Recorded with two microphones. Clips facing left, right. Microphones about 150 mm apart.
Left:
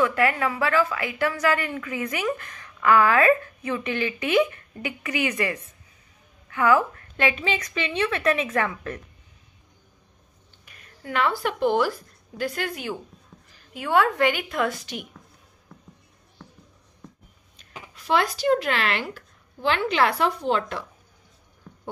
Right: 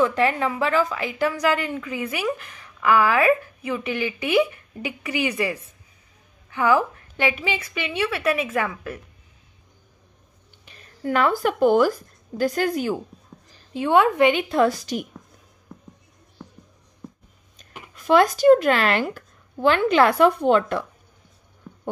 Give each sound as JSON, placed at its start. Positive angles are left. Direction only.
{"t": 0.0, "sound": "a woman's voice", "side_deg": -20}
{"t": 10.6, "sound": "a sound", "side_deg": -30}
{"t": 11.1, "sound": "speech", "side_deg": -45}
{"t": 13.7, "sound": "a woman's voice", "side_deg": -20}
{"t": 17.9, "sound": "speech", "side_deg": -50}